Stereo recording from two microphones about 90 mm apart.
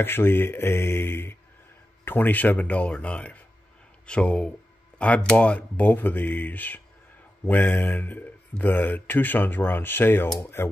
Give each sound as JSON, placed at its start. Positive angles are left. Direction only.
{"t": 0.0, "sound": "speech", "side_deg": 25}